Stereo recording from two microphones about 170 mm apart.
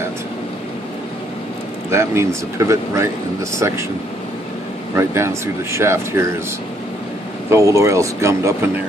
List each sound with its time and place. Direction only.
1.9 s speech: 15° right (ahead or behind)
4.9 s speech: 15° right (ahead or behind)
7.5 s speech: 15° right (ahead or behind)